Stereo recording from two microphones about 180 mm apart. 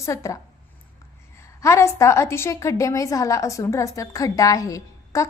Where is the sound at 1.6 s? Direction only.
15° left (ahead or behind).